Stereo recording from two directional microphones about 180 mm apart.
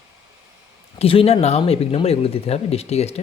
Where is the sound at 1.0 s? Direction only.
30° left (ahead or behind).